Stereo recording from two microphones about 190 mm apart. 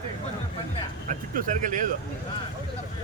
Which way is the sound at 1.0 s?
45° right (ahead or behind).